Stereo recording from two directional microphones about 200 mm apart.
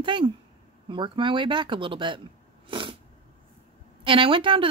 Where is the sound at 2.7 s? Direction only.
25° right (ahead or behind).